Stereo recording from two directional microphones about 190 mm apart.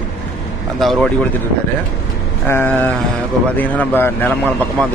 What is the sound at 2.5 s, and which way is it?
A man's voice, 10° left (ahead or behind).